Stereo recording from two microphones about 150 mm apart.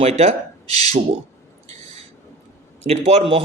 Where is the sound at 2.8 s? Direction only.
45° right (ahead or behind).